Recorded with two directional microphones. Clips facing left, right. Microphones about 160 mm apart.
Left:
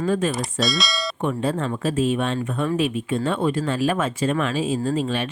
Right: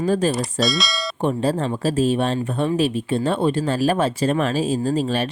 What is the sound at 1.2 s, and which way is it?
Speech, 35° right (ahead or behind).